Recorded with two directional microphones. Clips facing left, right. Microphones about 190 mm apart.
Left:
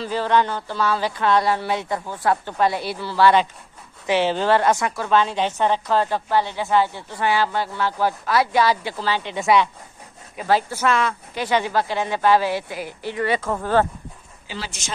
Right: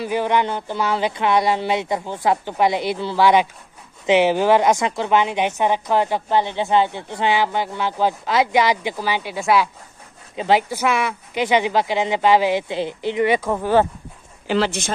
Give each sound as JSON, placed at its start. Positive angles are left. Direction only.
{"t": 0.0, "sound": "a woman's voice", "side_deg": -15}
{"t": 10.3, "sound": "a woman's voice", "side_deg": -20}
{"t": 14.5, "sound": "speech", "side_deg": -60}